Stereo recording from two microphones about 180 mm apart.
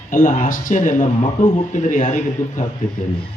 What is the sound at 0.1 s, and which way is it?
Speech, 50° left (ahead or behind).